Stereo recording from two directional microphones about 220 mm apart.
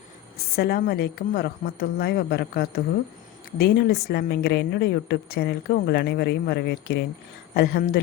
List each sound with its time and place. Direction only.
0.5 s a woman's voice: 45° left (ahead or behind)